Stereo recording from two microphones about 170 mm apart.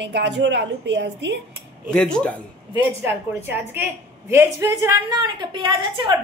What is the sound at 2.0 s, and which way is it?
Speech, 5° left (ahead or behind).